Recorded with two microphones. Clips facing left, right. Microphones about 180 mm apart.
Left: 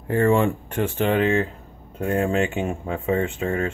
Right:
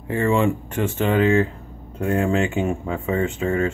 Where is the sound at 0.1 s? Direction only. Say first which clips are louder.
Left 1 dB; 45° left (ahead or behind).